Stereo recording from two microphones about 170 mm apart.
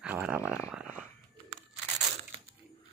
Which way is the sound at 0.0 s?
5° right (ahead or behind).